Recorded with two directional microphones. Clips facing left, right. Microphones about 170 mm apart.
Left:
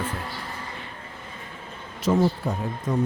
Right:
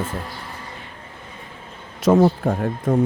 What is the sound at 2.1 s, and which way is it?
Speech, 65° right (ahead or behind).